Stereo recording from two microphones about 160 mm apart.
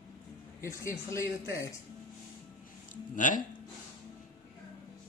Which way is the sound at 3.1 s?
55° left (ahead or behind).